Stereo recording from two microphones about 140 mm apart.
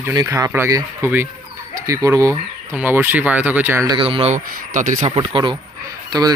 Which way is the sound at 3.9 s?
40° right (ahead or behind).